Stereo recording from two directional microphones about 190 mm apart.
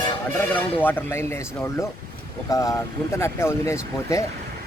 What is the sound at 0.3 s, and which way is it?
Speech, 10° left (ahead or behind).